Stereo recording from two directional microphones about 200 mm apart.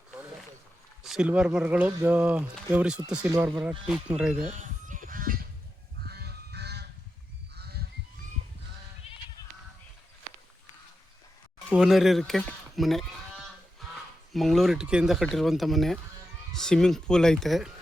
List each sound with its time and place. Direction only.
1.0 s speech: 5° right (ahead or behind)
4.4 s fowl: 40° right (ahead or behind)
6.1 s goose: 55° right (ahead or behind)
11.7 s sheep: centre (ahead or behind)
14.3 s speech: centre (ahead or behind)